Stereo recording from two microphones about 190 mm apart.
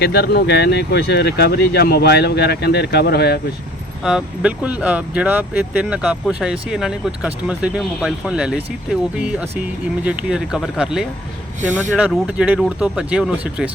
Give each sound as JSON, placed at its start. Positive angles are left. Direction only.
{"t": 0.0, "sound": "speech", "side_deg": 60}
{"t": 4.0, "sound": "speech", "side_deg": -5}
{"t": 12.1, "sound": "speech", "side_deg": -5}